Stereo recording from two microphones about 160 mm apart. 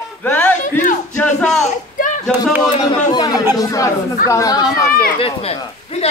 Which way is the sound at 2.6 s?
25° left (ahead or behind).